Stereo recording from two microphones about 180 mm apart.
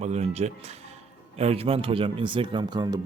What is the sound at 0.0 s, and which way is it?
Speech, 40° right (ahead or behind).